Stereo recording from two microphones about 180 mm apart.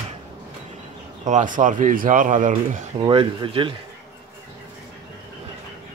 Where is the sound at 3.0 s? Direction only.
25° right (ahead or behind).